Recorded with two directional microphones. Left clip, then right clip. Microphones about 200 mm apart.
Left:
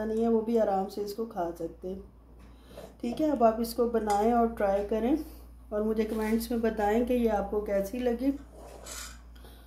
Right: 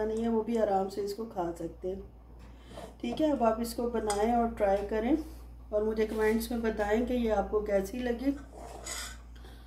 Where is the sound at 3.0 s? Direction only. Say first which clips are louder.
Left 2 dB; 25° left (ahead or behind).